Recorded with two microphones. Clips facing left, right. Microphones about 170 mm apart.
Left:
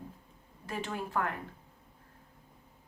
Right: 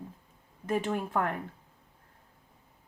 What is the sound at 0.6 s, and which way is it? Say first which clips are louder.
Speech: right 7 dB; 50° right (ahead or behind).